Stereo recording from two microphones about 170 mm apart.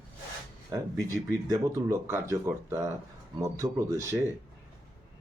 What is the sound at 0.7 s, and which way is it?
Speech, 20° right (ahead or behind).